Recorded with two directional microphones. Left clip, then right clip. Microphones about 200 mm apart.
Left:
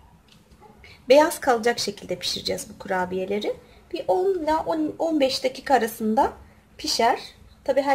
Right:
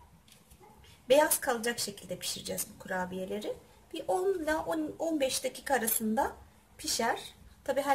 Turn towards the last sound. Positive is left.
turn(degrees=10)  # may be behind; listen again after turning